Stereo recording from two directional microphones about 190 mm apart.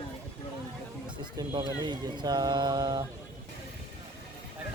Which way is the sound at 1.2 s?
25° right (ahead or behind).